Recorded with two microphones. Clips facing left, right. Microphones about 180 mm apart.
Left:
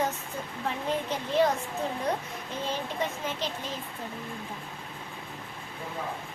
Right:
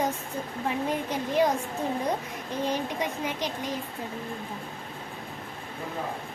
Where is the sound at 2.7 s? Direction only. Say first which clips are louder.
Right 2 dB; 15° right (ahead or behind).